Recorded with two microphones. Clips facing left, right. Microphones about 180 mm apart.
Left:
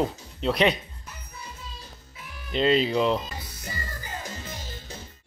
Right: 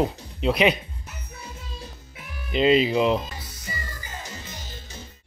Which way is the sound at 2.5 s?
5° right (ahead or behind).